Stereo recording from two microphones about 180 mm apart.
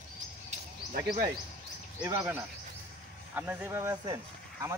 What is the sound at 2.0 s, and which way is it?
Speech, 20° right (ahead or behind).